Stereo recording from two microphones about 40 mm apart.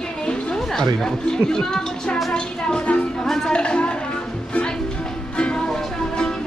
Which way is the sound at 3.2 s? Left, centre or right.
Centre.